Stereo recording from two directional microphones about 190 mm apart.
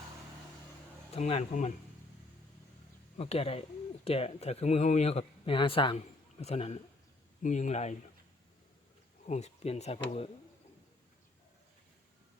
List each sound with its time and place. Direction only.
1.1 s speech: 35° left (ahead or behind)
3.2 s speech: 30° left (ahead or behind)
9.2 s speech: 35° left (ahead or behind)